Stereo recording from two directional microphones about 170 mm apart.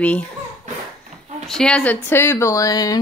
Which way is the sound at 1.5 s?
5° left (ahead or behind).